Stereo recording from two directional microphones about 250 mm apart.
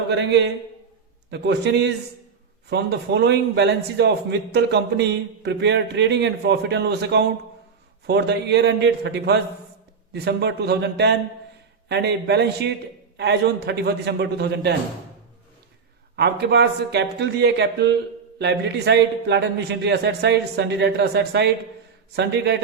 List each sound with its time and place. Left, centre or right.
0.1 s a man's voice: right
16.1 s a man's voice: right